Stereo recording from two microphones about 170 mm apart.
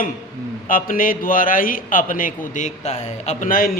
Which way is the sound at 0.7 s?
55° left (ahead or behind).